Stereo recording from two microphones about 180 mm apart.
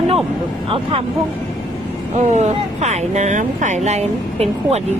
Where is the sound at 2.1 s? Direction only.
40° right (ahead or behind).